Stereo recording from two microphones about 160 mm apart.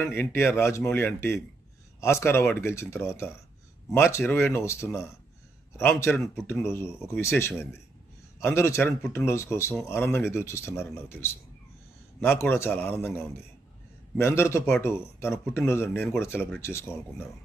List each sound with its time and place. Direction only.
0.0 s speech: 15° left (ahead or behind)
12.2 s speech: 15° left (ahead or behind)
14.1 s speech: 15° left (ahead or behind)